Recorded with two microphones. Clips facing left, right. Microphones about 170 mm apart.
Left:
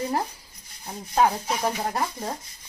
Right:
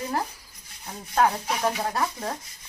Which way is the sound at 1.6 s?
20° left (ahead or behind).